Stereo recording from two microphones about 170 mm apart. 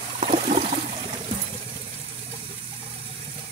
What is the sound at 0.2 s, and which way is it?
Water, 40° right (ahead or behind).